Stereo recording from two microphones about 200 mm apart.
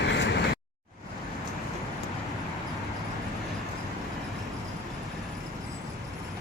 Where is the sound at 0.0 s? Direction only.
60° left (ahead or behind).